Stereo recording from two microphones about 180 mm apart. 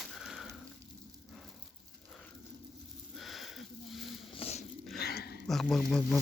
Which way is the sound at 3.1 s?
Centre (ahead or behind).